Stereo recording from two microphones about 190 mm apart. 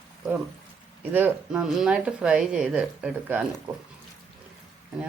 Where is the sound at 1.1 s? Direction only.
5° right (ahead or behind).